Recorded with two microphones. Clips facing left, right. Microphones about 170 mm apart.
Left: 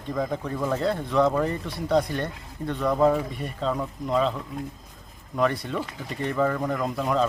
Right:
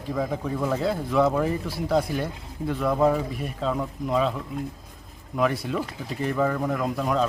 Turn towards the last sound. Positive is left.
turn(degrees=0)  # may be behind; listen again after turning